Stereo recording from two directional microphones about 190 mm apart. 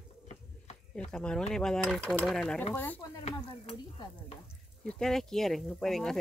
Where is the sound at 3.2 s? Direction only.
30° left (ahead or behind).